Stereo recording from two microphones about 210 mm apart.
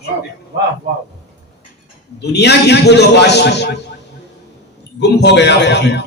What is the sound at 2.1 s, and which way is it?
A man's voice, 55° left (ahead or behind).